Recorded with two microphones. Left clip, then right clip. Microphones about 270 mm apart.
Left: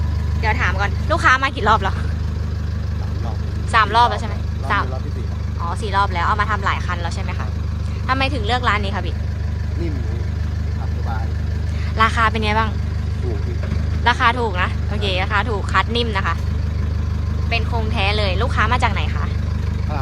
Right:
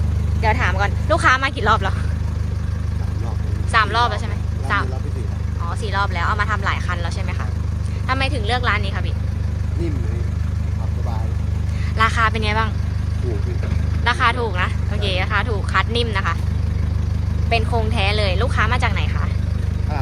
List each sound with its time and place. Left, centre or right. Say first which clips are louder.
0.4 s speech: right 1 dB; centre
3.7 s speech: left 3 dB; centre
11.9 s speech: left 1 dB; centre
14.0 s speech: left 2 dB; centre
17.5 s speech: right 2 dB; centre